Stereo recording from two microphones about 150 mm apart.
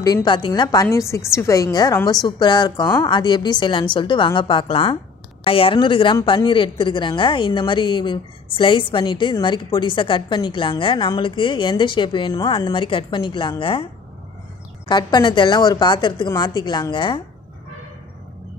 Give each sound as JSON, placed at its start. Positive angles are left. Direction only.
{"t": 0.0, "sound": "a woman's voice", "side_deg": 25}
{"t": 14.9, "sound": "a woman's voice", "side_deg": 30}